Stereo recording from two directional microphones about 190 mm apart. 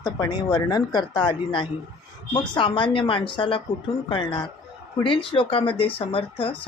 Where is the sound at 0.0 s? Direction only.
20° left (ahead or behind).